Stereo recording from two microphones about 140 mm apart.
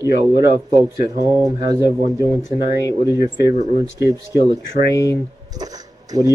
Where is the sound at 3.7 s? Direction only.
25° right (ahead or behind).